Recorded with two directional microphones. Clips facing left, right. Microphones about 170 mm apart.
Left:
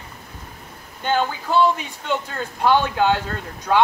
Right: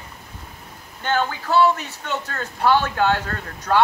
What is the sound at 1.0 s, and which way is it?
Speech, 10° left (ahead or behind).